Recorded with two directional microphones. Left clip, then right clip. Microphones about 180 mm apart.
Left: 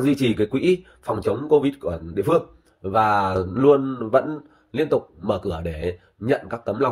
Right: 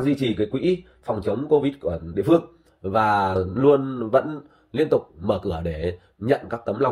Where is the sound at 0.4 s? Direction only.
30° left (ahead or behind).